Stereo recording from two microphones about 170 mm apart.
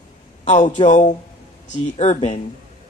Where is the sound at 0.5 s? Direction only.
45° left (ahead or behind).